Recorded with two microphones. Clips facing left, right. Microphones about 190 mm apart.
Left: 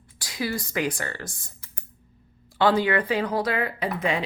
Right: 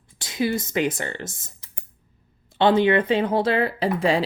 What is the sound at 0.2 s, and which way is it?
Speech, 20° right (ahead or behind).